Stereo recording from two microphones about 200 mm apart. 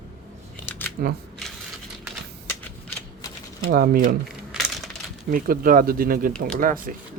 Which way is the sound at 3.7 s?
45° right (ahead or behind).